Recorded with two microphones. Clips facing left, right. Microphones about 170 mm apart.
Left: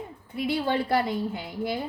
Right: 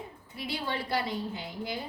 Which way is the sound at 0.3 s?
55° left (ahead or behind).